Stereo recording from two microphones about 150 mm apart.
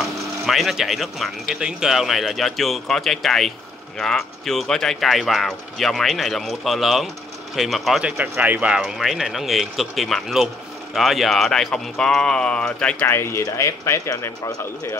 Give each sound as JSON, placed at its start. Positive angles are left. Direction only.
{"t": 0.5, "sound": "speech", "side_deg": 0}